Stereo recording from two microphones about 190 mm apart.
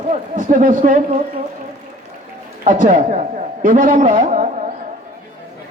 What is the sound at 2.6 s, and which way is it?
A man's voice, 40° right (ahead or behind).